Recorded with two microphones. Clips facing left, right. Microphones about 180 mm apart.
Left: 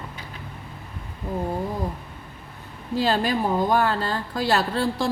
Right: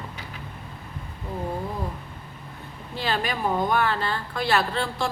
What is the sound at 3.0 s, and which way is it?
A woman's voice, 35° left (ahead or behind).